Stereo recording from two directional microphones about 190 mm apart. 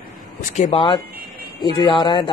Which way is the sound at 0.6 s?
30° left (ahead or behind).